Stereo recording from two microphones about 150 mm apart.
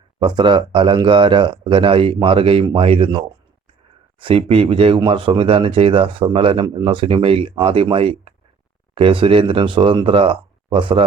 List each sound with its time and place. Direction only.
0.2 s speech: 30° right (ahead or behind)